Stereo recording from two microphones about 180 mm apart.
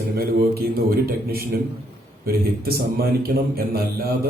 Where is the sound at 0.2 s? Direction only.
60° right (ahead or behind).